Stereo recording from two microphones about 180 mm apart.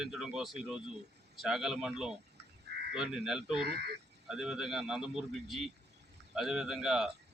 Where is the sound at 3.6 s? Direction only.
65° right (ahead or behind).